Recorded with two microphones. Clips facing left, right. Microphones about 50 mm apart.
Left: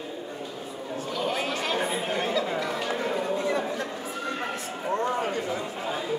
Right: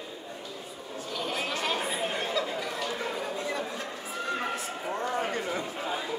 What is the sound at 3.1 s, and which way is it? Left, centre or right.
Chatter, centre.